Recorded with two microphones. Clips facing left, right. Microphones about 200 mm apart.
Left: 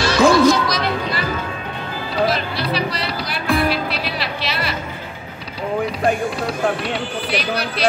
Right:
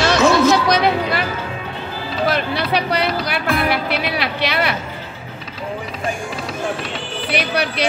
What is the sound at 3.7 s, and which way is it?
Music, 60° right (ahead or behind).